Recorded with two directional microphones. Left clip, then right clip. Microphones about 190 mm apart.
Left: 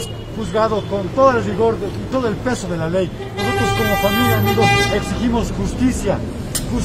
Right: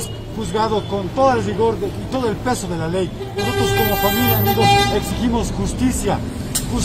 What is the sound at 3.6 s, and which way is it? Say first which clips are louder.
Vehicle: even; 10° left (ahead or behind).